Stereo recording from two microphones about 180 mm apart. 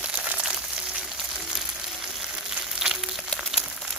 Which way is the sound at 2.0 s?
5° right (ahead or behind).